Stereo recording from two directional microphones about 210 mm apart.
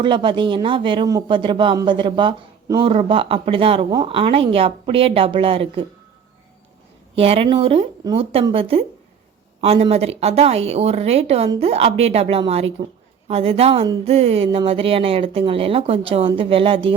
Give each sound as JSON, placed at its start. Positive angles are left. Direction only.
{"t": 0.0, "sound": "a man's voice", "side_deg": -20}
{"t": 7.2, "sound": "a man's voice", "side_deg": -25}